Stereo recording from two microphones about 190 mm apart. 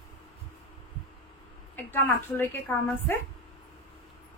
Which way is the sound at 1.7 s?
10° left (ahead or behind).